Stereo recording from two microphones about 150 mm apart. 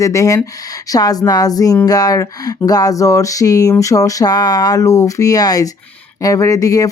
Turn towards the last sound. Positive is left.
turn(degrees=25)  # may be behind; listen again after turning